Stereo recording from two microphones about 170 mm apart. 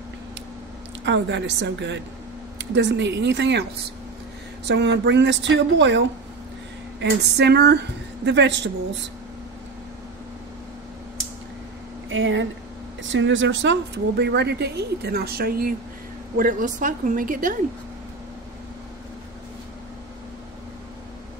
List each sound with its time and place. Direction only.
1.0 s a woman's voice: 90° right
4.6 s a woman's voice: 90° right
12.1 s a woman's voice: 90° right; by 17.6 s 55° right (ahead or behind)